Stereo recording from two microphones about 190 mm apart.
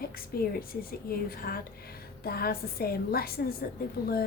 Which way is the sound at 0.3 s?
50° left (ahead or behind).